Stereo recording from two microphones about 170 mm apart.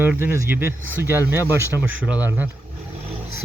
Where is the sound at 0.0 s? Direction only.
10° right (ahead or behind).